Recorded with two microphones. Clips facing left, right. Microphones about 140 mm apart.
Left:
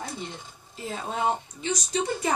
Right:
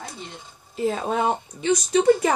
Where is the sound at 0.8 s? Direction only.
75° right (ahead or behind).